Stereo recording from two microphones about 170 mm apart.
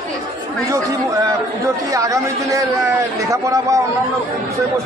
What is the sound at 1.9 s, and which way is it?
Speech, 20° right (ahead or behind).